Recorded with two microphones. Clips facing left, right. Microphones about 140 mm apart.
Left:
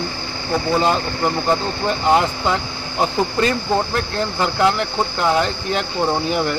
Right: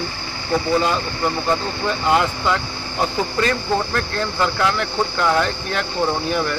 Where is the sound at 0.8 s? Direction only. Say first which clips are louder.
Left 2 dB; 25° left (ahead or behind).